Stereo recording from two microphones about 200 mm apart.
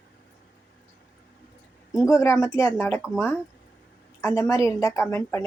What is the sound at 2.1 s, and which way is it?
Speech, 15° left (ahead or behind).